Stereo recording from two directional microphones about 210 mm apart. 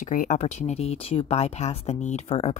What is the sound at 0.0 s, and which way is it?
Speech, 35° left (ahead or behind).